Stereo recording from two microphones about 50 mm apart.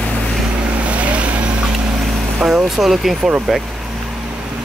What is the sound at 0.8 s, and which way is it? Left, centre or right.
Vehicle, right.